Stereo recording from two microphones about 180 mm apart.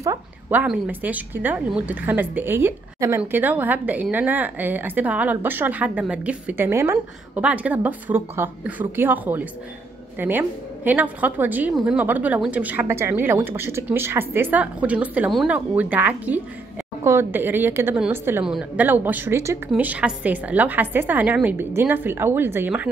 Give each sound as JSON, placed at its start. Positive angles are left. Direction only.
{"t": 0.0, "sound": "a woman's voice", "side_deg": -15}